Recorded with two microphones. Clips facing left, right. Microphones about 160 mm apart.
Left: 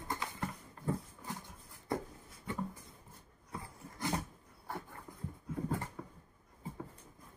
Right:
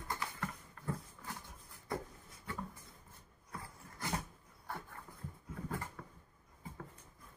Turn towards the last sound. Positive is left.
turn(degrees=15)  # may be behind; listen again after turning